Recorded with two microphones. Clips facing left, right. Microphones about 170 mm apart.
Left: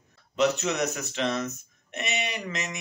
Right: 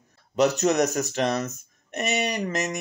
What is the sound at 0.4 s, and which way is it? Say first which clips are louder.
Speech: right 4 dB; 45° right (ahead or behind).